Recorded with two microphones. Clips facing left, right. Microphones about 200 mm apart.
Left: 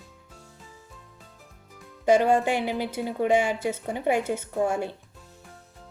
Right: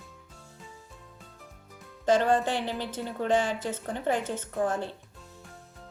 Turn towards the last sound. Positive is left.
turn(degrees=10)  # may be behind; listen again after turning